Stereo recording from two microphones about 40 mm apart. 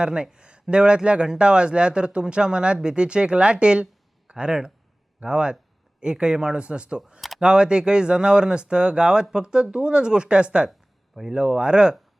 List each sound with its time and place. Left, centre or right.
0.0 s speech: right
10.7 s a sound: centre
11.3 s speech: right